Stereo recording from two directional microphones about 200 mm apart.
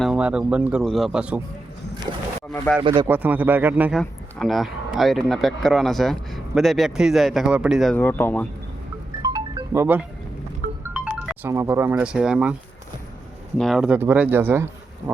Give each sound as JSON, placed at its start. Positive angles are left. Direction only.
{"t": 0.0, "sound": "speech", "side_deg": -5}
{"t": 2.8, "sound": "speech", "side_deg": -20}
{"t": 3.1, "sound": "speech", "side_deg": -10}
{"t": 7.9, "sound": "speech", "side_deg": 10}
{"t": 9.2, "sound": "music", "side_deg": -20}
{"t": 10.8, "sound": "speech", "side_deg": -5}
{"t": 13.6, "sound": "speech", "side_deg": 0}